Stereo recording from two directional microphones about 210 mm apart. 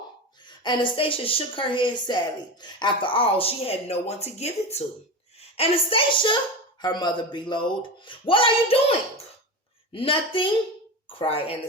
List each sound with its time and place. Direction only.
0.4 s speech: 20° left (ahead or behind)